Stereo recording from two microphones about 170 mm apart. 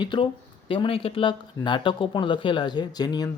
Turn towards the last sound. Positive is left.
turn(degrees=25)  # may be behind; listen again after turning